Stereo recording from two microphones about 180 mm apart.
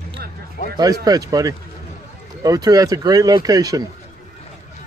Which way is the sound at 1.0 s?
20° right (ahead or behind).